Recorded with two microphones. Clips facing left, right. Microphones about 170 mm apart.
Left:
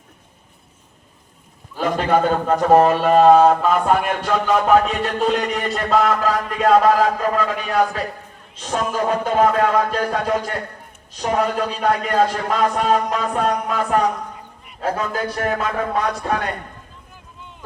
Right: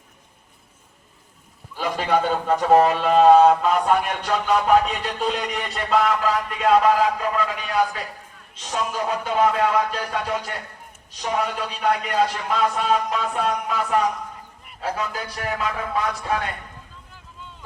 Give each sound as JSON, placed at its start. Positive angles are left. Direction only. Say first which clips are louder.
{"t": 1.8, "sound": "a man's voice", "louder": "left 4 dB", "side_deg": 50}